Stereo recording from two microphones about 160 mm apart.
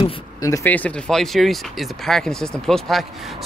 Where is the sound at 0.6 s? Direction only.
10° left (ahead or behind).